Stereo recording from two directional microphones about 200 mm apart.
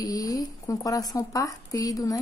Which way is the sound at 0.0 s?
20° left (ahead or behind).